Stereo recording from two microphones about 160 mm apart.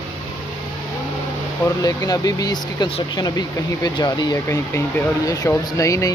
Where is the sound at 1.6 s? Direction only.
20° left (ahead or behind).